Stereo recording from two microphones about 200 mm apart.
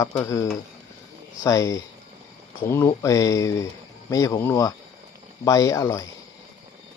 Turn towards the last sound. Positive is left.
turn(degrees=15)  # may be behind; listen again after turning